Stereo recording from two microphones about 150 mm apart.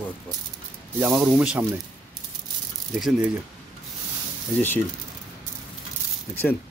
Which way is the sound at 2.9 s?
5° right (ahead or behind).